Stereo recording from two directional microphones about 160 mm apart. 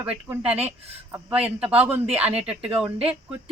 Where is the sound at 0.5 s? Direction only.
40° right (ahead or behind).